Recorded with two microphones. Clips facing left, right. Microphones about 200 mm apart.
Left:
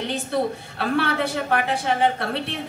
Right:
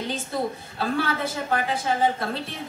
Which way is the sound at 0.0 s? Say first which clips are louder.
Left 4 dB; 65° left (ahead or behind).